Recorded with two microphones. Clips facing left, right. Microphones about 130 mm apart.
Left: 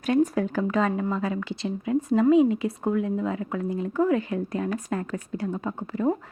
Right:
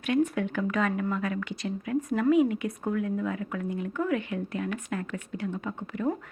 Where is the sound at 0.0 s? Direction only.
35° left (ahead or behind).